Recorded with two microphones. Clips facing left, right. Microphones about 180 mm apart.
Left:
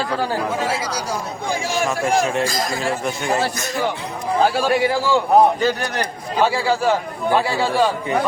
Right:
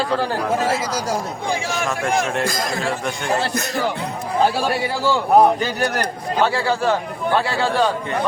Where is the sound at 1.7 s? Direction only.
Centre (ahead or behind).